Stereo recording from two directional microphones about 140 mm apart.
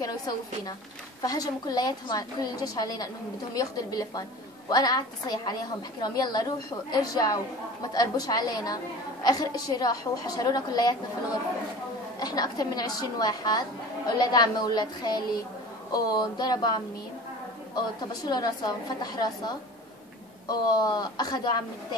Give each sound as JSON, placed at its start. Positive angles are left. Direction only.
{"t": 1.2, "sound": "a woman's voice", "side_deg": 30}
{"t": 12.2, "sound": "a woman's voice", "side_deg": 30}